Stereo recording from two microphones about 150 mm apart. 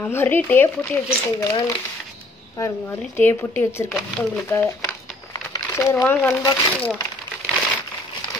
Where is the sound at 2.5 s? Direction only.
20° left (ahead or behind).